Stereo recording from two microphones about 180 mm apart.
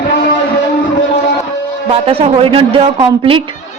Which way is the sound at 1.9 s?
35° right (ahead or behind).